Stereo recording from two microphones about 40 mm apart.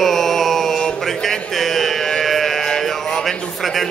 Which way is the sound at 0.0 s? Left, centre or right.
Centre.